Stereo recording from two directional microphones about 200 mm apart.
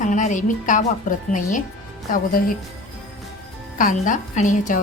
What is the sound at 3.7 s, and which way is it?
A woman's voice, 40° left (ahead or behind).